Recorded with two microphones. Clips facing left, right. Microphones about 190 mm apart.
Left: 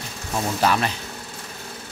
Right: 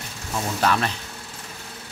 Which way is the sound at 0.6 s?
10° left (ahead or behind).